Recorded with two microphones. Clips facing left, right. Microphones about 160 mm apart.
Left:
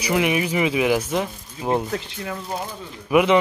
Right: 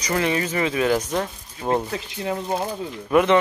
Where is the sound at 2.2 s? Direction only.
20° right (ahead or behind).